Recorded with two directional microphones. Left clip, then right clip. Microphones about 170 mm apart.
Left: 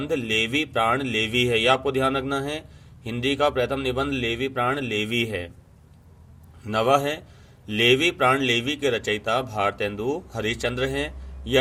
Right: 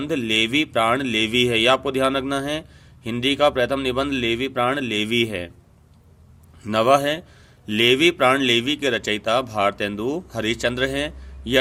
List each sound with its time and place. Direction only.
0.0 s speech: 45° right (ahead or behind)
6.6 s speech: 45° right (ahead or behind)